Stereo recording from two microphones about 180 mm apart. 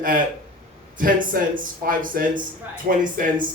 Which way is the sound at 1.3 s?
50° right (ahead or behind).